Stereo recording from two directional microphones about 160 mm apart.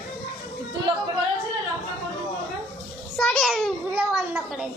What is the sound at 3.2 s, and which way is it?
A child's voice, centre (ahead or behind).